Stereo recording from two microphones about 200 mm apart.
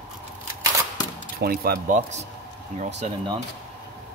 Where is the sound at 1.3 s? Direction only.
45° right (ahead or behind).